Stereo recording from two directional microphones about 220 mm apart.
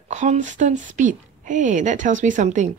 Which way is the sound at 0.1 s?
35° right (ahead or behind).